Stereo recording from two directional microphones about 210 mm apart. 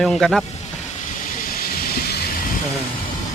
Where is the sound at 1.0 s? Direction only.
35° left (ahead or behind).